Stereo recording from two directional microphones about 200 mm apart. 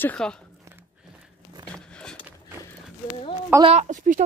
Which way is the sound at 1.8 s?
5° left (ahead or behind).